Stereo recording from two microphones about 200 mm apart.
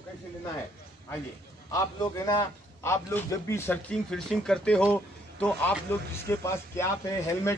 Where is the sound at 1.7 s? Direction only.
20° left (ahead or behind).